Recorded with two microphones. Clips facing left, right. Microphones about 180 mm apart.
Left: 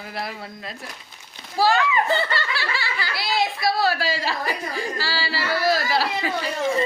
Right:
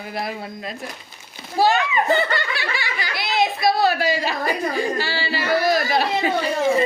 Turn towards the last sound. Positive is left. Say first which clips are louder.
# right 5 dB
turn(degrees=-25)  # may be behind; listen again after turning